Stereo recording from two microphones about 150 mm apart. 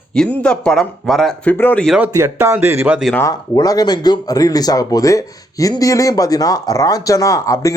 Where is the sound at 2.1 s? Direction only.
20° right (ahead or behind).